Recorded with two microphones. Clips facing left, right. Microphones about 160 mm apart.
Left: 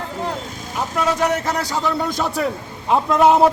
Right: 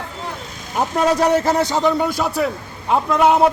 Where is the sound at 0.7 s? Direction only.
45° right (ahead or behind).